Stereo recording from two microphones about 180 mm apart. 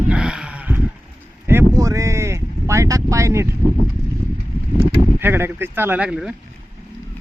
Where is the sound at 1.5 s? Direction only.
15° right (ahead or behind).